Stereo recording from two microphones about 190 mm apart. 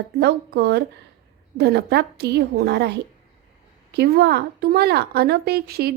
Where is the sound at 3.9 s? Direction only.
60° right (ahead or behind).